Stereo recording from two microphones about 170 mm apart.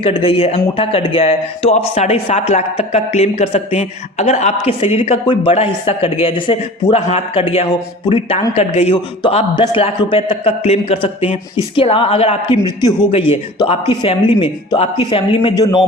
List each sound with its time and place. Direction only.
0.0 s a man's voice: 35° left (ahead or behind)